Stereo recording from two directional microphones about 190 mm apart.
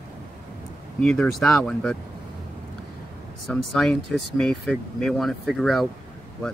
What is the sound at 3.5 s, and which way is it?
Speech, centre (ahead or behind).